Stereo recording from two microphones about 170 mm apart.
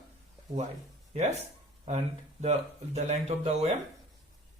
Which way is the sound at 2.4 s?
40° right (ahead or behind).